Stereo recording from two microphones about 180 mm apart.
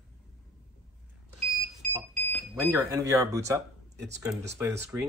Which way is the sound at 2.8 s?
15° right (ahead or behind).